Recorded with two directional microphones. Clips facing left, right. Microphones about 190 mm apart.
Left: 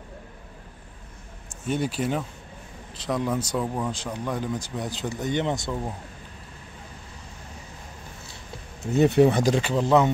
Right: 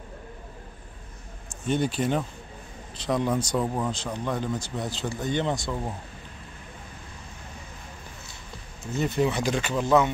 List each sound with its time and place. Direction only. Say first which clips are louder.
1.7 s speech: right 1 dB; 5° left (ahead or behind)
3.9 s speech: even; 10° left (ahead or behind)
8.9 s speech: left 7 dB; 65° left (ahead or behind)
9.3 s speech: left 4 dB; 40° left (ahead or behind)